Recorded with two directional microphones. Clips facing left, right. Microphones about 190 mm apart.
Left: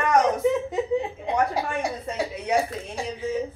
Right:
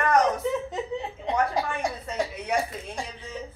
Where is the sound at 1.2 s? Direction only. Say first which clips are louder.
Left 1 dB; 10° left (ahead or behind).